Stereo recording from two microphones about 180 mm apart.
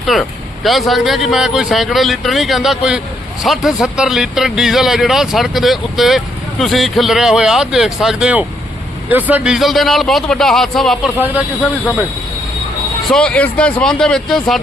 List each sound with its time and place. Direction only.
0.1 s speech: centre (ahead or behind)
13.1 s speech: 5° left (ahead or behind)